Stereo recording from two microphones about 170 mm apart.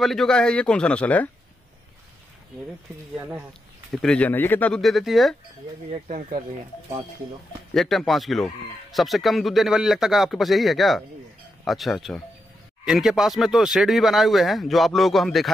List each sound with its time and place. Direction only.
0.0 s speech: centre (ahead or behind)
3.2 s speech: 15° right (ahead or behind)
3.9 s speech: 5° left (ahead or behind)
5.9 s speech: 45° right (ahead or behind)
7.7 s speech: centre (ahead or behind)